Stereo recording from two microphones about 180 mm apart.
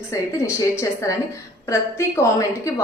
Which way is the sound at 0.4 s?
15° left (ahead or behind).